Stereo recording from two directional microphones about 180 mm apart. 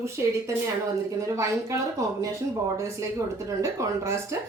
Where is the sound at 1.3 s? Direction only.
15° right (ahead or behind).